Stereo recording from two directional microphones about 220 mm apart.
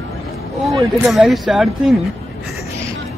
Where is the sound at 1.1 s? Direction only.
Centre (ahead or behind).